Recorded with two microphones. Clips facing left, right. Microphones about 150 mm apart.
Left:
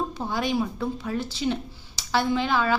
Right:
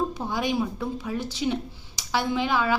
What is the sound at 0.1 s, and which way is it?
A woman's voice, 15° right (ahead or behind).